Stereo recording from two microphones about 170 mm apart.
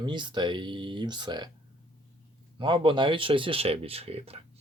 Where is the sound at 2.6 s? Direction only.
30° right (ahead or behind).